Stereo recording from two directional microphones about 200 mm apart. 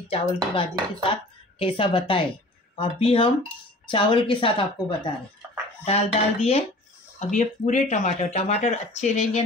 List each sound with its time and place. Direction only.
0.1 s speech: 30° left (ahead or behind)